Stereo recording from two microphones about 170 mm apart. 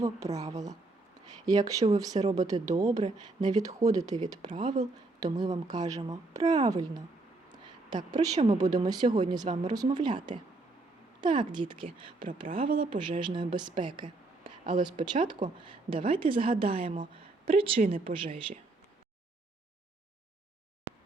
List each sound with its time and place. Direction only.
0.0 s a woman's voice: 20° right (ahead or behind)
7.5 s a sound: 25° right (ahead or behind)
8.4 s a woman's voice: 25° right (ahead or behind)